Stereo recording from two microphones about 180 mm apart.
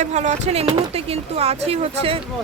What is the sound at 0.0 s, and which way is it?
Speech, 40° right (ahead or behind).